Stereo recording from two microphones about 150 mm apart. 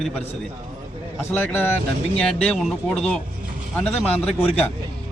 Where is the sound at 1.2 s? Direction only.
15° left (ahead or behind).